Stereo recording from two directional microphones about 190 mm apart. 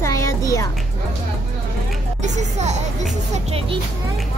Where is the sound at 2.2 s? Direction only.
35° right (ahead or behind).